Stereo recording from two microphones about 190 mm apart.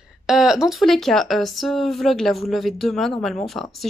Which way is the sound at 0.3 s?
5° right (ahead or behind).